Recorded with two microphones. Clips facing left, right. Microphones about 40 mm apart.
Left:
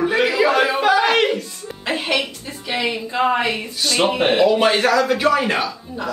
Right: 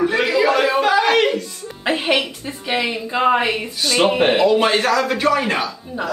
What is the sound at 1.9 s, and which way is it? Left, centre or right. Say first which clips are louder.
Music: right 3 dB; centre.